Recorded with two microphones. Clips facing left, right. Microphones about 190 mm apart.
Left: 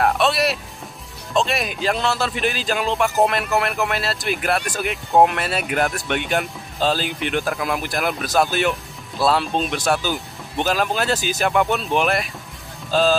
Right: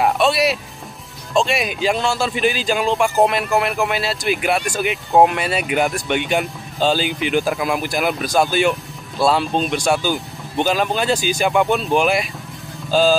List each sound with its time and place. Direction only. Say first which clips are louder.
0.0 s speech: right 2 dB; centre (ahead or behind)